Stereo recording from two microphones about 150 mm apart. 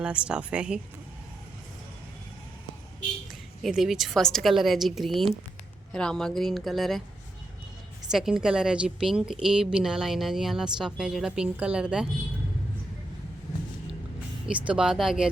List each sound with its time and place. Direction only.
0.0 s speech: 5° right (ahead or behind)
3.6 s a woman's voice: 5° right (ahead or behind)
8.1 s a woman's voice: 5° right (ahead or behind)
14.4 s a woman's voice: 10° right (ahead or behind)